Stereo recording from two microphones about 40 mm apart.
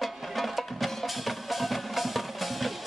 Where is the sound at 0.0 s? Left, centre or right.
Centre.